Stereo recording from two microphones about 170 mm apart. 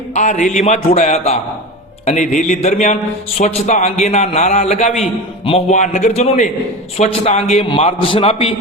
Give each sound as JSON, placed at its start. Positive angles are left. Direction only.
{"t": 0.1, "sound": "a man's voice", "side_deg": 45}